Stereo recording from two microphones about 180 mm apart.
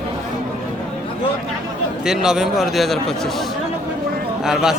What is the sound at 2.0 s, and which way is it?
A man's voice, 5° right (ahead or behind).